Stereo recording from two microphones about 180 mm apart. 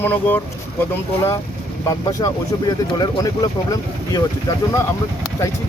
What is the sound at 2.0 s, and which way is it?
Speech, 20° left (ahead or behind).